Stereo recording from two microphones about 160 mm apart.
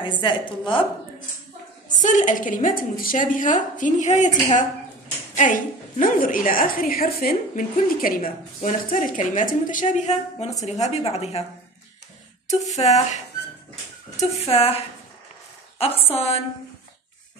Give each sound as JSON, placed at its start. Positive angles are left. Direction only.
{"t": 0.0, "sound": "a woman's voice", "side_deg": 30}
{"t": 1.9, "sound": "a woman's voice", "side_deg": 50}
{"t": 12.7, "sound": "a woman's voice", "side_deg": 45}
{"t": 14.4, "sound": "a woman's voice", "side_deg": 40}
{"t": 15.8, "sound": "a woman's voice", "side_deg": 40}